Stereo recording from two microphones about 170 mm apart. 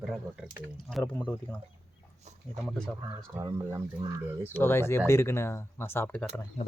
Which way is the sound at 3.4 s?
15° right (ahead or behind).